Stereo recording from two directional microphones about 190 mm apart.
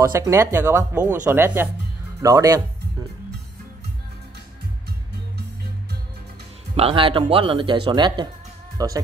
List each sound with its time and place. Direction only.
0.0 s speech: 15° right (ahead or behind)
6.8 s speech: 30° right (ahead or behind)